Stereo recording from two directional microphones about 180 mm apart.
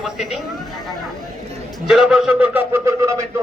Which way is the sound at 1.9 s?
5° right (ahead or behind).